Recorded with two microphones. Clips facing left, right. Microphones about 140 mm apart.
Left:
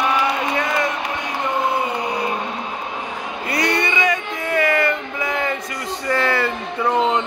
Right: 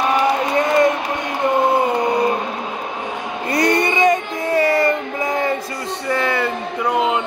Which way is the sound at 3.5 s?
45° right (ahead or behind).